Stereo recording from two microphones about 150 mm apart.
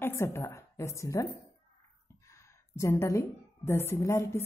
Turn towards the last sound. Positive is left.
turn(degrees=20)  # may be behind; listen again after turning